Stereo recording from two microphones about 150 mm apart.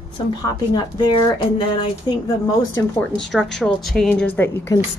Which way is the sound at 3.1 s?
5° left (ahead or behind).